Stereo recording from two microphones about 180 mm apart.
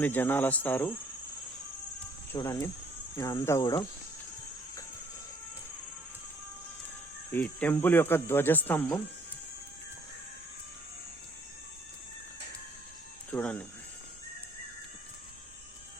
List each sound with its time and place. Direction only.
0.0 s speech: 10° left (ahead or behind)
2.3 s speech: 15° left (ahead or behind)
3.2 s cricket: 20° left (ahead or behind)
7.3 s speech: 10° left (ahead or behind)
13.3 s speech: 10° left (ahead or behind)